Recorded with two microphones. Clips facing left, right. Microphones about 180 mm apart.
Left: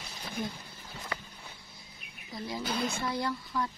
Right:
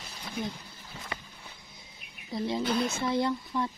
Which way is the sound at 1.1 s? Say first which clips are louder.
Left 1 dB; 20° right (ahead or behind).